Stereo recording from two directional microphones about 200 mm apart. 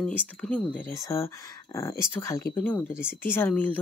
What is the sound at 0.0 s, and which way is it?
Speech, 5° left (ahead or behind).